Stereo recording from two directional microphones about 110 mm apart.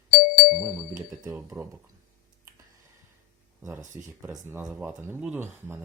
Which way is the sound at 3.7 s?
25° right (ahead or behind).